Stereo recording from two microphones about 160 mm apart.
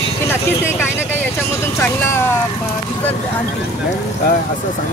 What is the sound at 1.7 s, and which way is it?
Speech, 15° left (ahead or behind).